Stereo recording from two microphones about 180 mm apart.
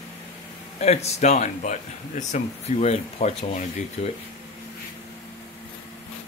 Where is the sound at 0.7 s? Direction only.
35° left (ahead or behind).